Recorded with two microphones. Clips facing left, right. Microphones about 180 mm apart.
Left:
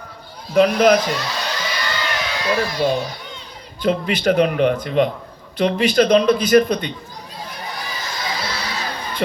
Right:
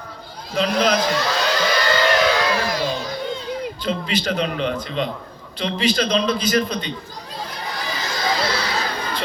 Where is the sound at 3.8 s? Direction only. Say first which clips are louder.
Left 8 dB; 55° left (ahead or behind).